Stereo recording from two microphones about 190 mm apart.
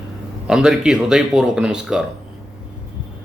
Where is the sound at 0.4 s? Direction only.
5° right (ahead or behind).